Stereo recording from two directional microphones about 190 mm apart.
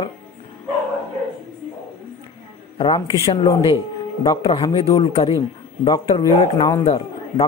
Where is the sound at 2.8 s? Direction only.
25° left (ahead or behind).